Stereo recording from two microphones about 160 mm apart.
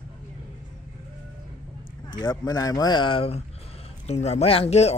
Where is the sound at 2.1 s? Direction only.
25° left (ahead or behind).